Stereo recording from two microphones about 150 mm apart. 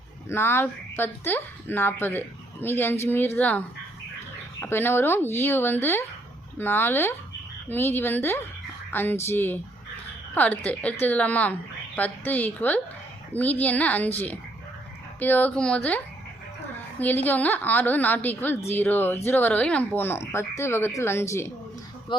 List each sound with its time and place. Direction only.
0.3 s a woman's voice: 15° left (ahead or behind)
4.6 s a woman's voice: 15° left (ahead or behind)
17.0 s a woman's voice: 10° left (ahead or behind)